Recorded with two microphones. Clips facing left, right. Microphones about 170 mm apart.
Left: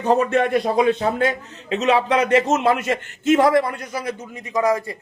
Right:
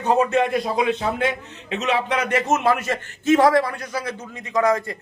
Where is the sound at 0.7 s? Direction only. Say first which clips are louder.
Left 4 dB; 45° left (ahead or behind); by 4.9 s 10° left (ahead or behind).